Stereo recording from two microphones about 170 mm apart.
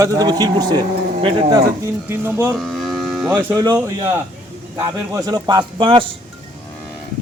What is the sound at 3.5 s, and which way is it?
Speech, 20° right (ahead or behind).